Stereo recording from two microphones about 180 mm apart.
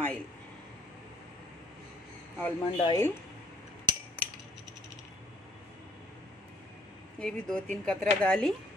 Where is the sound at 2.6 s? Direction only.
30° left (ahead or behind).